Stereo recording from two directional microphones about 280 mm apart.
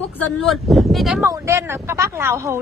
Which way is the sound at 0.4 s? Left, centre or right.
Centre.